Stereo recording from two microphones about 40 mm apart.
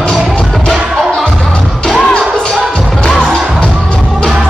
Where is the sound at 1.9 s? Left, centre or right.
Centre.